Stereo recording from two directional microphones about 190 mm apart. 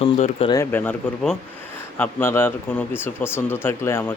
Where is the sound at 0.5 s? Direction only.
10° left (ahead or behind).